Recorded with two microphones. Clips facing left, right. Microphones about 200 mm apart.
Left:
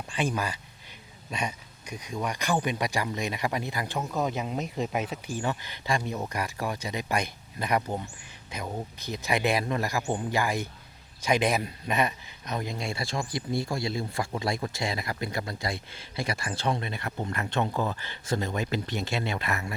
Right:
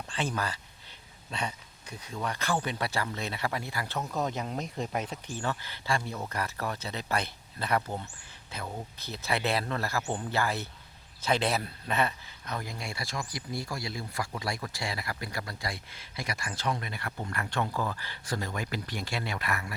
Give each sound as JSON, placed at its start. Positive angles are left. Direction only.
{"t": 0.1, "sound": "speech", "side_deg": 15}
{"t": 4.1, "sound": "a man's voice", "side_deg": 5}